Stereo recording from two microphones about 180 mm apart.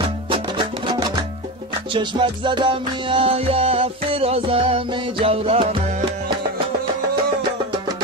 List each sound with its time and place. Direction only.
0.3 s music: 25° right (ahead or behind)